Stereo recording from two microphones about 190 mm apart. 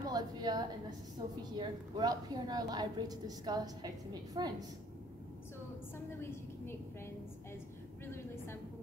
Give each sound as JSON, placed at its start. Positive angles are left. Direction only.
{"t": 0.1, "sound": "a woman's voice", "side_deg": -20}
{"t": 6.0, "sound": "a woman's voice", "side_deg": 10}